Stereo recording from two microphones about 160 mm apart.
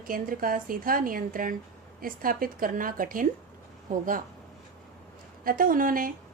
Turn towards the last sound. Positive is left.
turn(degrees=-60)  # may be behind; listen again after turning